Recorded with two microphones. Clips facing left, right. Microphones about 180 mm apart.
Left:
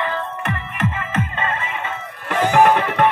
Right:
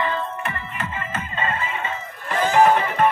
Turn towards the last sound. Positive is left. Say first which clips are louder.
# left 2 dB
turn(degrees=75)  # may be behind; listen again after turning